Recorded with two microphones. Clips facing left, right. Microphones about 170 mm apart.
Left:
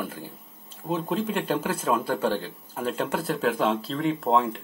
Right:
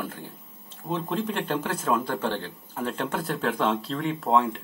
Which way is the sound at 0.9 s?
10° left (ahead or behind).